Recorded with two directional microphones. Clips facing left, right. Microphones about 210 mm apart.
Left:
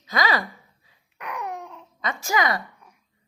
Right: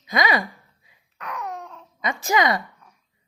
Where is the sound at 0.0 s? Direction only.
15° right (ahead or behind).